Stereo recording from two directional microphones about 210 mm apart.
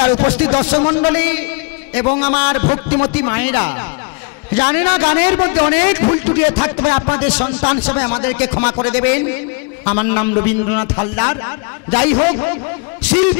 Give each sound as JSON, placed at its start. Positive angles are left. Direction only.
{"t": 0.0, "sound": "a man's voice", "side_deg": 25}